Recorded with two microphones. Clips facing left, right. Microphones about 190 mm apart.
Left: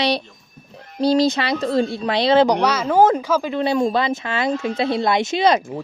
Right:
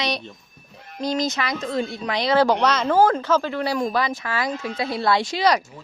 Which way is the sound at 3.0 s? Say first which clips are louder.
Left 4 dB; 20° left (ahead or behind).